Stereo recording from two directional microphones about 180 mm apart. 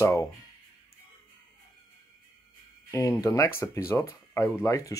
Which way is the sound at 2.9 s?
20° left (ahead or behind).